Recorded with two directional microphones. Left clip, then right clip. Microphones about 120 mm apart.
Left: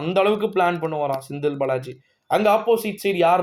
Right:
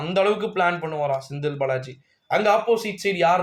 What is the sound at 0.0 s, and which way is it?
Speech, 40° left (ahead or behind).